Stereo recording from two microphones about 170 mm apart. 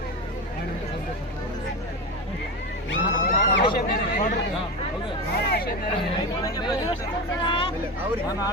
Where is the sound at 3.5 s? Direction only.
65° left (ahead or behind).